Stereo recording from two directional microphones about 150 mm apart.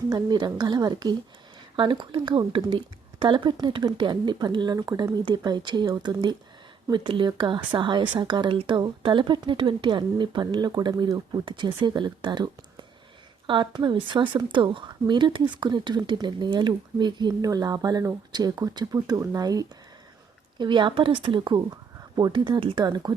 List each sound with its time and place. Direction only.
0.1 s a woman's voice: 30° right (ahead or behind)